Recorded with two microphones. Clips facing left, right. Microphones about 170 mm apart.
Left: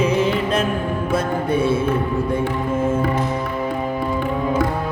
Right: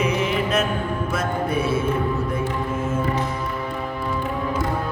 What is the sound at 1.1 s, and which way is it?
Music, 30° left (ahead or behind).